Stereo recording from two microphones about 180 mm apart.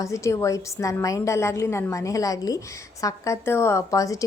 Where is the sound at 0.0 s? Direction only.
15° left (ahead or behind).